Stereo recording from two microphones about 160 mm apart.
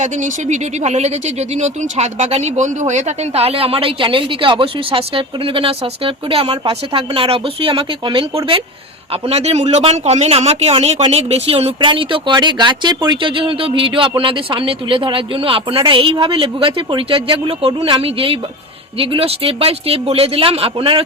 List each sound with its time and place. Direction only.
0.0 s speech: 50° right (ahead or behind)